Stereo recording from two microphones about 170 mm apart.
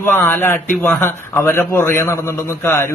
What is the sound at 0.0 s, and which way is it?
A man's voice, 15° left (ahead or behind).